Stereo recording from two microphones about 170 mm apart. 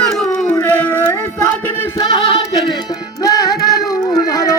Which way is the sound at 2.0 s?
30° left (ahead or behind).